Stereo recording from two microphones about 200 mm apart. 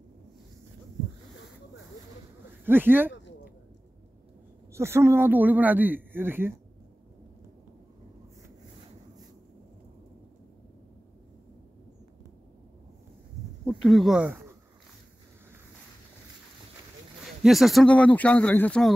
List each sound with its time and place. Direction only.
2.6 s speech: 10° right (ahead or behind)
3.1 s a sound: 65° left (ahead or behind)
4.7 s speech: 15° right (ahead or behind)
13.7 s speech: centre (ahead or behind)
17.4 s speech: centre (ahead or behind)